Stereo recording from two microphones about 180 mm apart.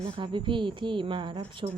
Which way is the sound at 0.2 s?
25° right (ahead or behind).